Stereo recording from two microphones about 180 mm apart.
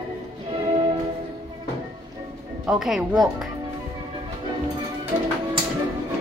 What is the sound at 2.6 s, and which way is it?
Music, 5° right (ahead or behind).